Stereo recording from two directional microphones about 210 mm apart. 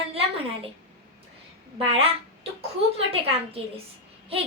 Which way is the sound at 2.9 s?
25° right (ahead or behind).